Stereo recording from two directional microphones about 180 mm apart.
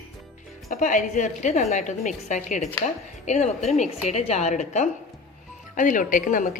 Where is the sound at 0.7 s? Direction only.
45° left (ahead or behind).